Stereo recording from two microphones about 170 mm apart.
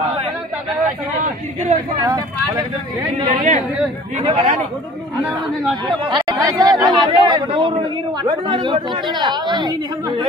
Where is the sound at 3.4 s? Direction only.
45° right (ahead or behind).